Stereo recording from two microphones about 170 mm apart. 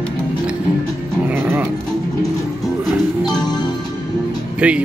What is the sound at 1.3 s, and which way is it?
Music, 15° right (ahead or behind).